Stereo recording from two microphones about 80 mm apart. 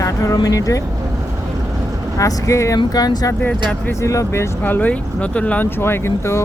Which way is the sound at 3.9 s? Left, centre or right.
Left.